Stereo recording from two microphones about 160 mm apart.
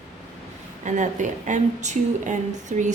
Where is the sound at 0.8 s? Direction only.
50° right (ahead or behind).